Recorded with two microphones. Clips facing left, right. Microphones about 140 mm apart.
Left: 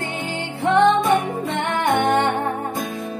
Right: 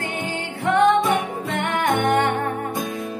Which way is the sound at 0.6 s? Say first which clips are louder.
Left 1 dB; 25° left (ahead or behind).